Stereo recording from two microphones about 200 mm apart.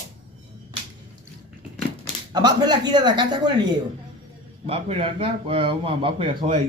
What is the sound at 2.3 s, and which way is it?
A man's voice, 20° right (ahead or behind).